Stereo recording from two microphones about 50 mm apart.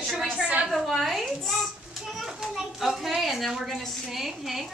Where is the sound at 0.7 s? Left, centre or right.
Centre.